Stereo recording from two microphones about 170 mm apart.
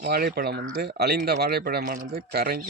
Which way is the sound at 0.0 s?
65° right (ahead or behind).